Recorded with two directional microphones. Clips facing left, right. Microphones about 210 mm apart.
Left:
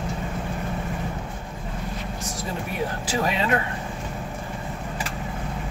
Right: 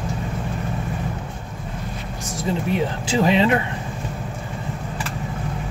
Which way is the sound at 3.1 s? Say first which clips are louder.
Right 8 dB; 25° right (ahead or behind).